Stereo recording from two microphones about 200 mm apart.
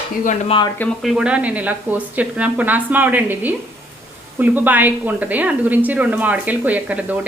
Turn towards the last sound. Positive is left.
turn(degrees=-10)  # may be behind; listen again after turning